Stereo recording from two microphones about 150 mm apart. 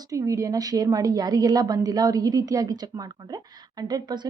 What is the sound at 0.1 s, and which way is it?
A woman's voice, 20° right (ahead or behind).